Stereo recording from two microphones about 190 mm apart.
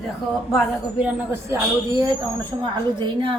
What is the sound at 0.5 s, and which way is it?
Speech, 5° right (ahead or behind).